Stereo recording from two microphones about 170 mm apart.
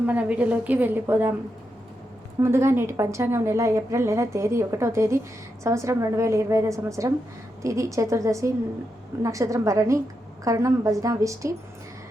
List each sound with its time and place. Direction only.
0.0 s a woman's voice: 10° right (ahead or behind)
2.4 s a woman's voice: 15° right (ahead or behind)